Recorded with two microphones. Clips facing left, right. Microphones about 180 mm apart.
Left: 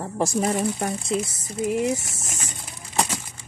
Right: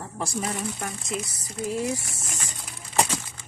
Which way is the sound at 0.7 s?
30° left (ahead or behind).